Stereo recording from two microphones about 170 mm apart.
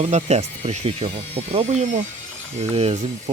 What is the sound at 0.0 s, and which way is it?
Speech, 40° right (ahead or behind).